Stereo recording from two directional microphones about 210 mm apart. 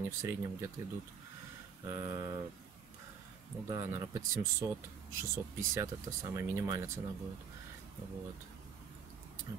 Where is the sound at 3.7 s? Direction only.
15° right (ahead or behind).